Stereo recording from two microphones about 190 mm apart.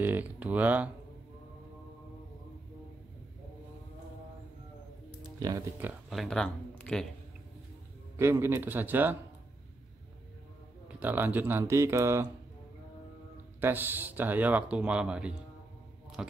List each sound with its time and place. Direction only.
0.0 s speech: 10° right (ahead or behind)
5.2 s speech: 20° right (ahead or behind)
6.0 s speech: centre (ahead or behind)
6.8 s a sound: 5° left (ahead or behind)
8.2 s speech: 15° right (ahead or behind)
11.0 s speech: 10° right (ahead or behind)
13.6 s speech: 10° right (ahead or behind)